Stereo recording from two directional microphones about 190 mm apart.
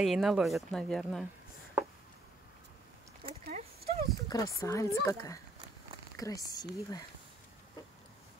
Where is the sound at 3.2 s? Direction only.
50° right (ahead or behind).